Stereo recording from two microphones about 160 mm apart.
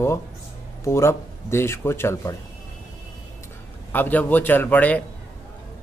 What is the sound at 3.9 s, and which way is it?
Speech, 10° left (ahead or behind).